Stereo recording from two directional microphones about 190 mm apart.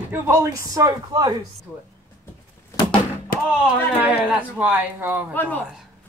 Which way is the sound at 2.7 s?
25° left (ahead or behind).